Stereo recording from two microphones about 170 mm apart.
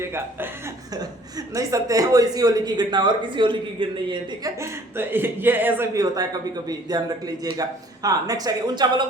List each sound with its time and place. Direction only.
0.0 s speech: 15° right (ahead or behind)
4.6 s speech: 15° right (ahead or behind)